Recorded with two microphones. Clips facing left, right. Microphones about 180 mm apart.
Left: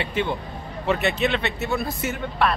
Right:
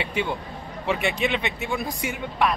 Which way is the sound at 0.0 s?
10° right (ahead or behind).